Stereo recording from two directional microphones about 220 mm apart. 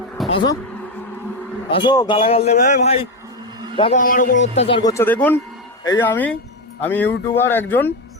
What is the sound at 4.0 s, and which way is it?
Speech, 40° left (ahead or behind).